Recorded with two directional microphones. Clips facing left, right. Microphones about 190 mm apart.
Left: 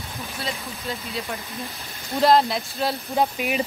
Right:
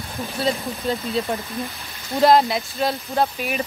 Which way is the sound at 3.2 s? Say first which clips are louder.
Left 1 dB; 15° left (ahead or behind).